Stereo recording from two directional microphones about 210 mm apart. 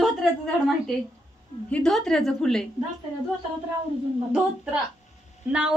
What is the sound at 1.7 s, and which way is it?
Speech, 5° left (ahead or behind).